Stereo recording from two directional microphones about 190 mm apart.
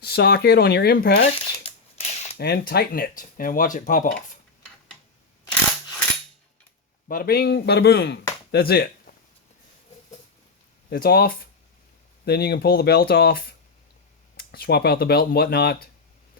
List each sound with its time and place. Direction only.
0.0 s speech: 60° left (ahead or behind)
1.4 s a sound: 30° left (ahead or behind)
2.4 s speech: 55° left (ahead or behind)
7.1 s speech: 50° left (ahead or behind)
10.8 s speech: 55° left (ahead or behind)